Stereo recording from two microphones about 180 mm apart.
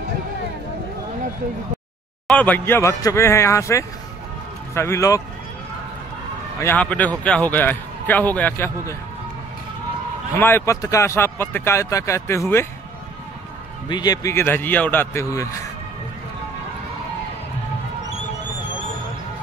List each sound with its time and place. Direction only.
2.2 s a man's voice: 10° left (ahead or behind)
6.6 s a man's voice: 10° left (ahead or behind)
10.3 s a man's voice: 10° left (ahead or behind)
13.8 s a man's voice: 25° left (ahead or behind)